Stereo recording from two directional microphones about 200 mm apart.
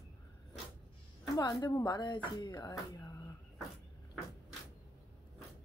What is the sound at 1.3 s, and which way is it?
Speech, 15° left (ahead or behind).